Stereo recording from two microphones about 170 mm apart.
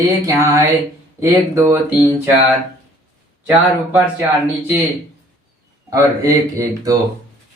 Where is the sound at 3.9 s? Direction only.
5° right (ahead or behind).